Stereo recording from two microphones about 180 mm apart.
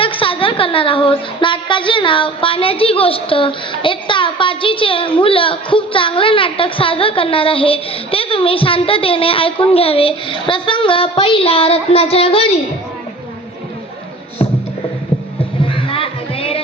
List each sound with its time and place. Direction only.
0.0 s a woman's voice: 30° left (ahead or behind)
15.6 s music: 30° left (ahead or behind)